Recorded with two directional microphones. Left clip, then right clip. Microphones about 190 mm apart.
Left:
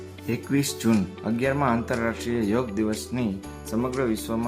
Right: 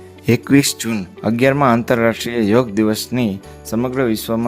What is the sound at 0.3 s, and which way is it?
Speech, 55° right (ahead or behind).